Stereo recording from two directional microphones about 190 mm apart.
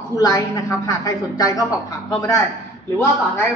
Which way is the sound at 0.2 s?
15° left (ahead or behind).